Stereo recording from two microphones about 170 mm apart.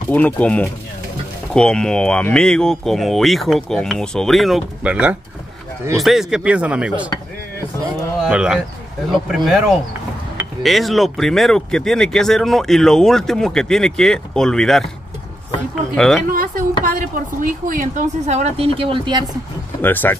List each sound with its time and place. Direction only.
0.1 s speech: 10° left (ahead or behind); by 7.1 s 5° right (ahead or behind)
8.2 s speech: 5° right (ahead or behind)
16.0 s speech: centre (ahead or behind)
16.3 s a woman's voice: 55° right (ahead or behind); by 19.2 s 30° right (ahead or behind)
19.8 s speech: 10° left (ahead or behind)